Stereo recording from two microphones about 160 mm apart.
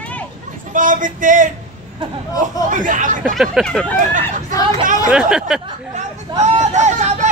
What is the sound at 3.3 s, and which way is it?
Speech, centre (ahead or behind).